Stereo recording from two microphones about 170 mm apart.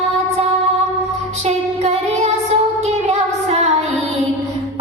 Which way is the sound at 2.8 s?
40° right (ahead or behind).